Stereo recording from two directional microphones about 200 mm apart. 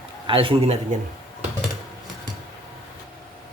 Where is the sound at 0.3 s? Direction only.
25° right (ahead or behind).